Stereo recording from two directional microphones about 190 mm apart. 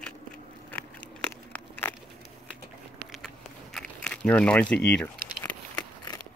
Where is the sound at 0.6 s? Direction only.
10° left (ahead or behind).